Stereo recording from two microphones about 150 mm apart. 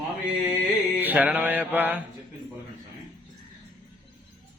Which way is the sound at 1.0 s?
10° right (ahead or behind).